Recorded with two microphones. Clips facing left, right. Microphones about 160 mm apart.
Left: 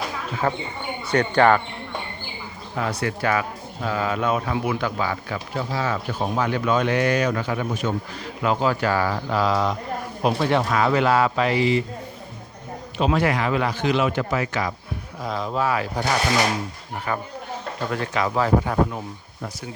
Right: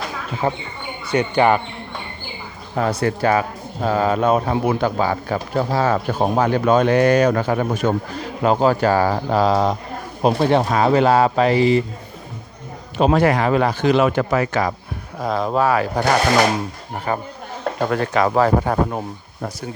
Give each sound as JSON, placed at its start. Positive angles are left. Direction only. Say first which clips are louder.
{"t": 0.4, "sound": "speech", "louder": "right 2 dB", "side_deg": -25}
{"t": 3.0, "sound": "speech", "louder": "right 5 dB", "side_deg": -35}
{"t": 13.0, "sound": "speech", "louder": "right 5 dB", "side_deg": -45}
{"t": 17.1, "sound": "speech", "louder": "right 4 dB", "side_deg": -30}
{"t": 17.6, "sound": "speech", "louder": "right 8 dB", "side_deg": -60}